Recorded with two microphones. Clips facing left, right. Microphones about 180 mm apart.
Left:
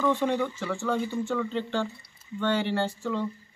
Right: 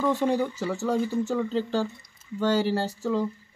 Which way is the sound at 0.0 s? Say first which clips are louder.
Right 1 dB; 35° right (ahead or behind).